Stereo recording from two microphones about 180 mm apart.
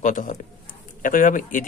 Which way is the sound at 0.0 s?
45° left (ahead or behind).